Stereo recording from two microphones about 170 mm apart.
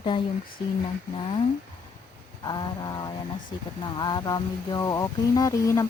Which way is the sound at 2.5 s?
25° left (ahead or behind).